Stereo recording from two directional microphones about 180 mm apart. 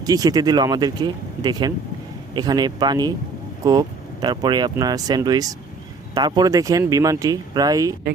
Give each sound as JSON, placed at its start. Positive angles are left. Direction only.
{"t": 0.0, "sound": "speech", "side_deg": -20}